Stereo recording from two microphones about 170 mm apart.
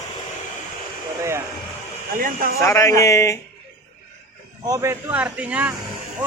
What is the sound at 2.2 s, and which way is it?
Speech, 55° right (ahead or behind).